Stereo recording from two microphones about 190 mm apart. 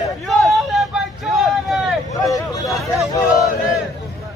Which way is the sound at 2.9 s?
15° left (ahead or behind).